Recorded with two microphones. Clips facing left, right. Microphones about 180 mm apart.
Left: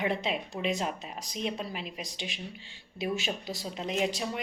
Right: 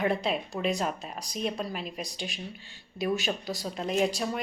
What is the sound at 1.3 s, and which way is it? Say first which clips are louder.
A woman's voice: right 2 dB; 45° right (ahead or behind).